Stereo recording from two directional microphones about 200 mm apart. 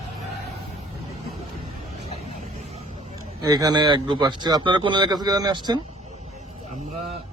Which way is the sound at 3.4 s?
20° right (ahead or behind).